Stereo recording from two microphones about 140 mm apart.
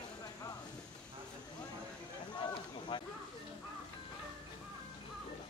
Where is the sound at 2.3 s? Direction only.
35° left (ahead or behind).